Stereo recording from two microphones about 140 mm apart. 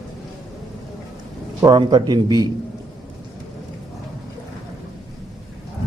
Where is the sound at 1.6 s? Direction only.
30° right (ahead or behind).